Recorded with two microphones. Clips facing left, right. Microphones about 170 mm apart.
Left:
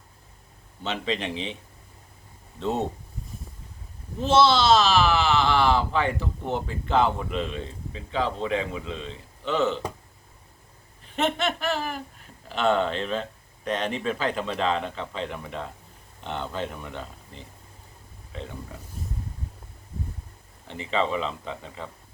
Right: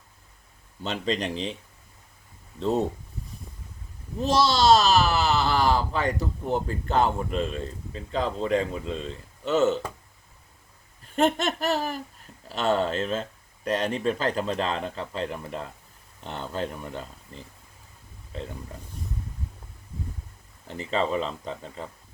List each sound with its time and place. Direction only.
0.8 s speech: 40° right (ahead or behind)
4.2 s speech: 40° right (ahead or behind)
11.0 s speech: 40° right (ahead or behind)
20.7 s speech: 40° right (ahead or behind)